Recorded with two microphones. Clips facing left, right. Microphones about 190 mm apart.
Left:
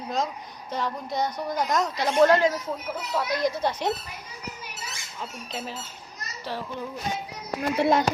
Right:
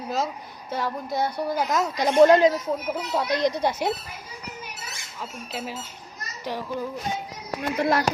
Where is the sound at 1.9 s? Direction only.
15° right (ahead or behind).